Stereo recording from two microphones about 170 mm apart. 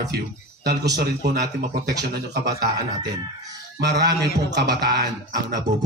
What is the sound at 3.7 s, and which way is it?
Speech, 85° right.